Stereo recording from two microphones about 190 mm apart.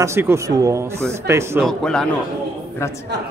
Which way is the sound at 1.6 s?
5° left (ahead or behind).